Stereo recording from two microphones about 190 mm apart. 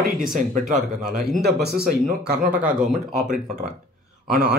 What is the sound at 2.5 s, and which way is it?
Speech, 5° right (ahead or behind).